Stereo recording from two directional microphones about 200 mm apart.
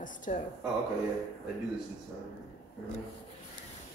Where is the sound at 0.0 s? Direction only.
40° left (ahead or behind).